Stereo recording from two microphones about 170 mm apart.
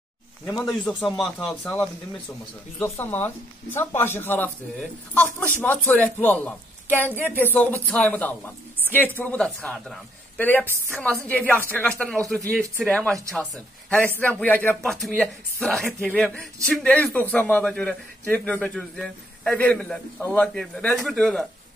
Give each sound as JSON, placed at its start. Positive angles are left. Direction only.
{"t": 0.5, "sound": "a man's voice", "side_deg": 15}
{"t": 0.8, "sound": "a man's voice", "side_deg": 0}